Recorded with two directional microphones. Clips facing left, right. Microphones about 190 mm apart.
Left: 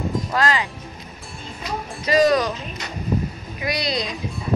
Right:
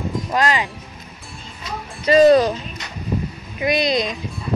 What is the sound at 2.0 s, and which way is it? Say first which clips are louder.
Speech: right 5 dB; 30° right (ahead or behind).